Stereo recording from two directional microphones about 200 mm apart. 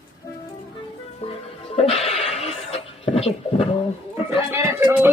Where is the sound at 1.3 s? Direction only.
30° left (ahead or behind).